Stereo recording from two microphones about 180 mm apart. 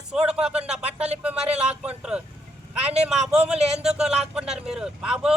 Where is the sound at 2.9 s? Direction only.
5° right (ahead or behind).